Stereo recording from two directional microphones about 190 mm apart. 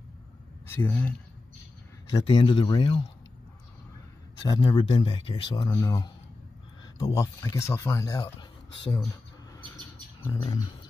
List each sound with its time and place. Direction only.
0.7 s speech: 10° left (ahead or behind)
2.1 s speech: 25° left (ahead or behind)
4.5 s speech: 20° left (ahead or behind)
10.2 s speech: 20° left (ahead or behind)